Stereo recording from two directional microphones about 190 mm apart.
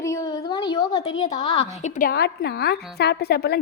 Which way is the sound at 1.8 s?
40° left (ahead or behind).